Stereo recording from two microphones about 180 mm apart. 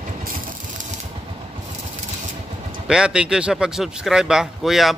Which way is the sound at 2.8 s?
5° right (ahead or behind).